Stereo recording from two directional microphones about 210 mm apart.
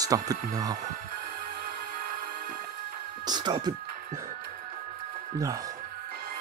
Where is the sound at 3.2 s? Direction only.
20° right (ahead or behind).